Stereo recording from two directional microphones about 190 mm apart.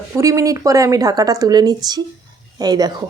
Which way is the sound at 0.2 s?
15° right (ahead or behind).